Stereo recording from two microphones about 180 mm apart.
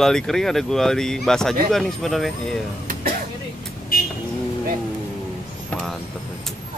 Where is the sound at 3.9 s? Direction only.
55° left (ahead or behind).